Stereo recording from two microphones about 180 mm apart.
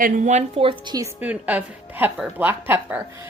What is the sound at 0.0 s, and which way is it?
A woman's voice, 40° right (ahead or behind).